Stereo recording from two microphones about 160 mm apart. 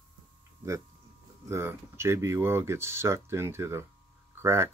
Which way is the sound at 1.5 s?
15° right (ahead or behind).